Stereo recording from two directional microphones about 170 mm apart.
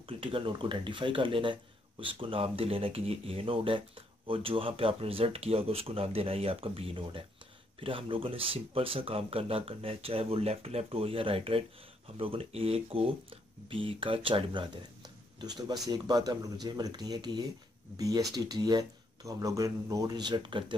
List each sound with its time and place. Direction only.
0.0 s speech: 30° right (ahead or behind)